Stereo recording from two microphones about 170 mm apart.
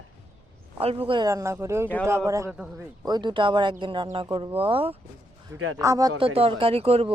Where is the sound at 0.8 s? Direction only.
35° right (ahead or behind).